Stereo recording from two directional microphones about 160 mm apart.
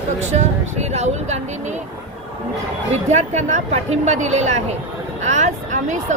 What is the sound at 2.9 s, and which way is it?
A woman's voice, 45° right (ahead or behind).